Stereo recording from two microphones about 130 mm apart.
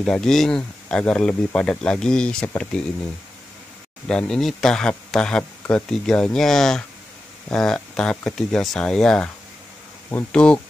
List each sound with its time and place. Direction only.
0.0 s speech: 5° left (ahead or behind)
4.1 s a man's voice: 5° left (ahead or behind)